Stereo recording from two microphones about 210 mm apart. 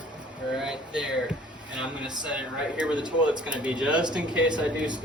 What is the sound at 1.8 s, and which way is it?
Speech, 5° right (ahead or behind).